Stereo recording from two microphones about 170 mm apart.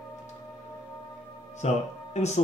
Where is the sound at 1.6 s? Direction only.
40° left (ahead or behind).